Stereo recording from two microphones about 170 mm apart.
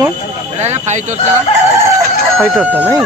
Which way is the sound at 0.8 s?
45° right (ahead or behind).